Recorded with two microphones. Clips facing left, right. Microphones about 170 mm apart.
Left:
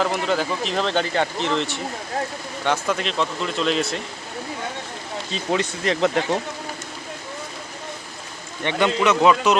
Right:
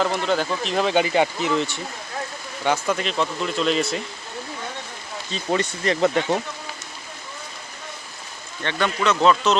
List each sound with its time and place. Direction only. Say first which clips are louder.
0.0 s speech: even; centre (ahead or behind)
5.3 s speech: even; centre (ahead or behind)
8.6 s speech: left 3 dB; 15° left (ahead or behind)